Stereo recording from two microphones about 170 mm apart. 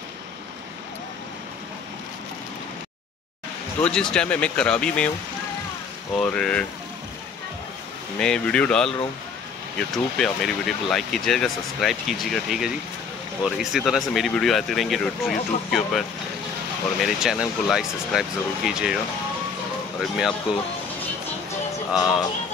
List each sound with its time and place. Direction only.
3.8 s speech: 5° left (ahead or behind)
6.1 s speech: 5° left (ahead or behind)
8.2 s speech: 5° left (ahead or behind)
20.0 s speech: centre (ahead or behind)
21.9 s music: 20° left (ahead or behind)